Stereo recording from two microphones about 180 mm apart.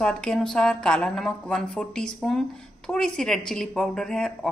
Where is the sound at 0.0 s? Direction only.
5° left (ahead or behind).